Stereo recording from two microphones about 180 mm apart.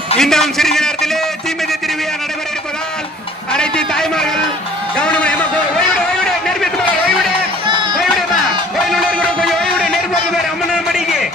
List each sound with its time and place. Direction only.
0.2 s a man's voice: centre (ahead or behind)
3.5 s a sound: 5° left (ahead or behind)
4.9 s music: 5° left (ahead or behind)
7.6 s music: 25° right (ahead or behind)
8.8 s music: centre (ahead or behind)